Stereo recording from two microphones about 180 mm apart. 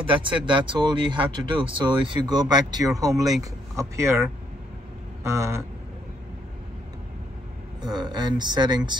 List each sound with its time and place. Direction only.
0.1 s speech: 30° right (ahead or behind)
7.8 s speech: 25° right (ahead or behind)